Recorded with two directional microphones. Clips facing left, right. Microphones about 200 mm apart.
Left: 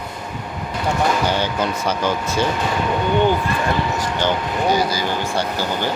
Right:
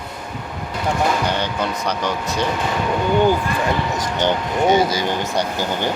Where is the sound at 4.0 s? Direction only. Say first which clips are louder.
Right 1 dB; 20° right (ahead or behind).